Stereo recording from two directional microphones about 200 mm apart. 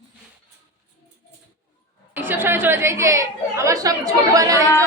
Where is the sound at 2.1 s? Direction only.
10° right (ahead or behind).